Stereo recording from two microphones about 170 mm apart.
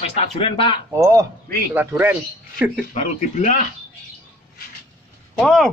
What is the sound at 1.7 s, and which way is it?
Speech, 10° right (ahead or behind).